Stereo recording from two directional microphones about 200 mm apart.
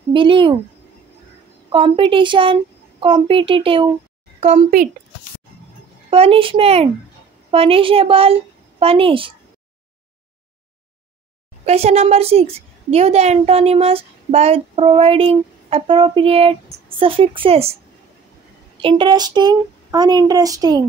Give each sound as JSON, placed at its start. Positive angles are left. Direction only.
{"t": 0.1, "sound": "a woman's voice", "side_deg": -25}
{"t": 1.7, "sound": "a woman's voice", "side_deg": -25}
{"t": 6.0, "sound": "a woman's voice", "side_deg": -30}
{"t": 11.6, "sound": "a woman's voice", "side_deg": -30}
{"t": 18.8, "sound": "a woman's voice", "side_deg": -25}